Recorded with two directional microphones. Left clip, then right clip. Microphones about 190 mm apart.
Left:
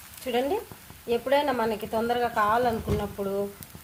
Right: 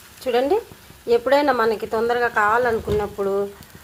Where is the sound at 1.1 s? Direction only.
25° right (ahead or behind).